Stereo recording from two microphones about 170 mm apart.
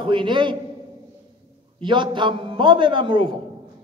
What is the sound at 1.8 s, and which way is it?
A man's voice, 30° right (ahead or behind).